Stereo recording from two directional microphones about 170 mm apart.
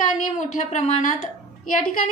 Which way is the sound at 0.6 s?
40° left (ahead or behind).